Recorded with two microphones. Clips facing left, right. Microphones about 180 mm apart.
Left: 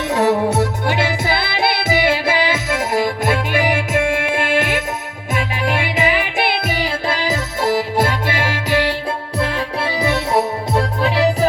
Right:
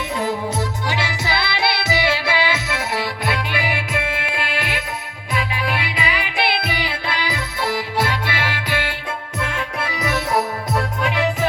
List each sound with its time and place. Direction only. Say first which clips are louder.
0.1 s music: left 9 dB; 80° left; by 11.4 s 35° left (ahead or behind)